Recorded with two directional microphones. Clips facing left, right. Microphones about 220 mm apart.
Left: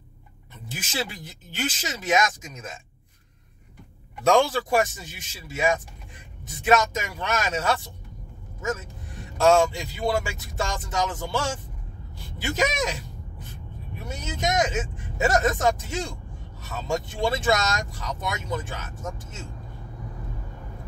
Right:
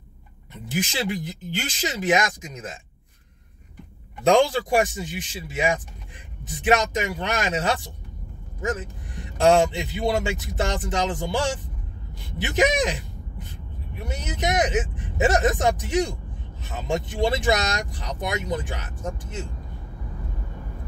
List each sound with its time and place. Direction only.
0.7 s speech: 15° right (ahead or behind)
4.2 s speech: 15° right (ahead or behind)
14.0 s speech: 15° right (ahead or behind)